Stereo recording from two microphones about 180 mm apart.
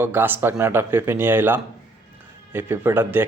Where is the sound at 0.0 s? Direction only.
10° right (ahead or behind).